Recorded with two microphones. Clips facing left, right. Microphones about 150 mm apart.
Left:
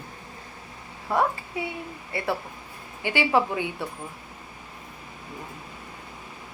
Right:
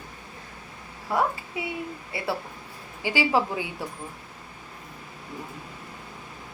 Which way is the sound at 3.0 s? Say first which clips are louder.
Left 1 dB; 10° right (ahead or behind).